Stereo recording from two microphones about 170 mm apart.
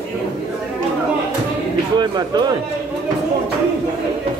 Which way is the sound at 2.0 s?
25° right (ahead or behind).